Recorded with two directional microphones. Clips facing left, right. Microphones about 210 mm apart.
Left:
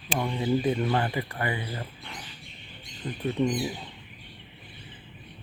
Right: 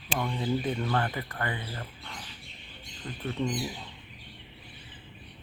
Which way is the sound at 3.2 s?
15° left (ahead or behind).